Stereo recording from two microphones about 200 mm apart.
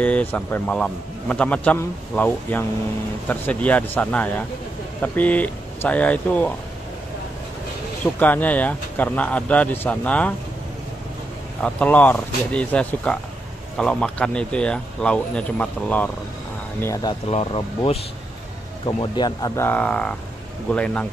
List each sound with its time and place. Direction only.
0.0 s a man's voice: 5° left (ahead or behind)
8.2 s a man's voice: 10° left (ahead or behind)
11.6 s a man's voice: 5° left (ahead or behind)
17.3 s a man's voice: 25° left (ahead or behind); by 21.1 s 5° left (ahead or behind)